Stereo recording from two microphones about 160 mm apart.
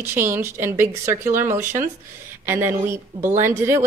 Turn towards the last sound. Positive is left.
turn(degrees=-15)  # may be behind; listen again after turning